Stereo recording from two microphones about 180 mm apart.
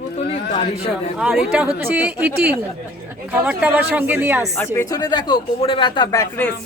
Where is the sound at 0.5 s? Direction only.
35° left (ahead or behind).